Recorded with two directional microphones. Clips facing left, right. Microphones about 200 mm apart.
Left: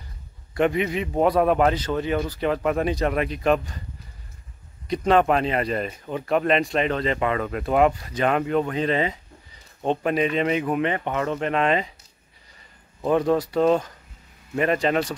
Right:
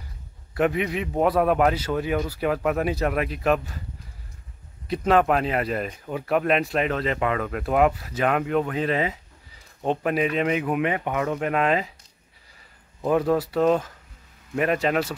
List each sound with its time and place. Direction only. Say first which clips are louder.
0.6 s speech: left 1 dB; centre (ahead or behind)
4.8 s speech: left 1 dB; 5° right (ahead or behind)
13.0 s speech: left 1 dB; 5° right (ahead or behind)